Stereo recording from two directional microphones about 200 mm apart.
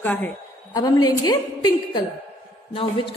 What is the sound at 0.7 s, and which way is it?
A woman's voice, 20° left (ahead or behind).